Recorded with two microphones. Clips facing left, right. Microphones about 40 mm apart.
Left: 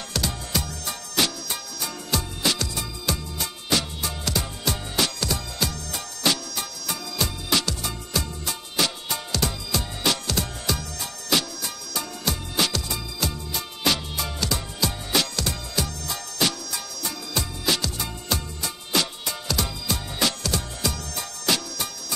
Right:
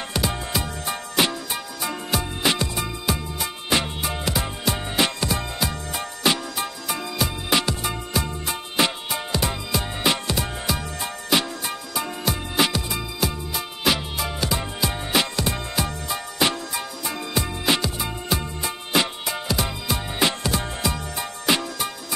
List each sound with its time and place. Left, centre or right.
0.1 s music: right